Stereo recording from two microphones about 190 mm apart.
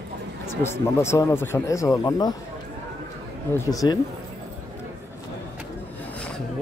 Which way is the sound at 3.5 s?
15° left (ahead or behind).